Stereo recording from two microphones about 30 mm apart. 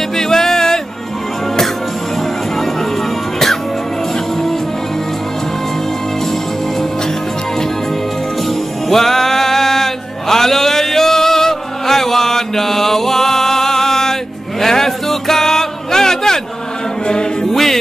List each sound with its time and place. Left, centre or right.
0.2 s music: centre
8.8 s music: centre; by 17.5 s left
17.5 s music: centre